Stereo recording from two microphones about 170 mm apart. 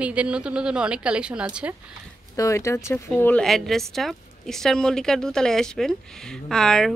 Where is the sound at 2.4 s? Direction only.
20° left (ahead or behind).